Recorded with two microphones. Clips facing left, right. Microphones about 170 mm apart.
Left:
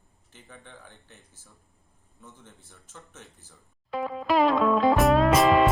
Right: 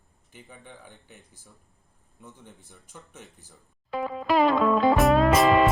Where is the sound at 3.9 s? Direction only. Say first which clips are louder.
Right 1 dB; centre (ahead or behind).